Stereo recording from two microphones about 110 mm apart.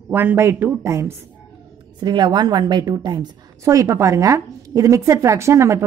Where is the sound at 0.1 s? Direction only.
20° right (ahead or behind).